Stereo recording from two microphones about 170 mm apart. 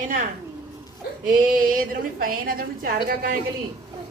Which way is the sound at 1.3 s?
55° right (ahead or behind).